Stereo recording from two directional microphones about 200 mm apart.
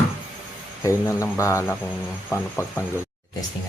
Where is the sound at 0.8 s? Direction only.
15° left (ahead or behind).